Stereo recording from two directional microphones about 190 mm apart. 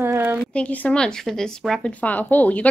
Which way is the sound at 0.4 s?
5° left (ahead or behind).